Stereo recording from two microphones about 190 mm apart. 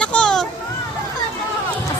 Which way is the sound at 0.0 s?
5° left (ahead or behind).